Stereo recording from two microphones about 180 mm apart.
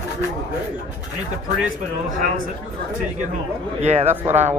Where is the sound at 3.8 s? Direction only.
40° right (ahead or behind).